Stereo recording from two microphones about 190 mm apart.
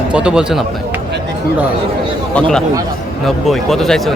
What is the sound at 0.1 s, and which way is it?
Speech, 5° right (ahead or behind).